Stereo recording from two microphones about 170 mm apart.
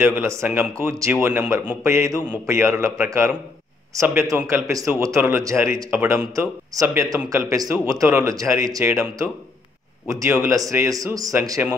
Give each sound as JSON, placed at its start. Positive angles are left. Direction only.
{"t": 0.0, "sound": "speech", "side_deg": -15}
{"t": 1.9, "sound": "a man's voice", "side_deg": -15}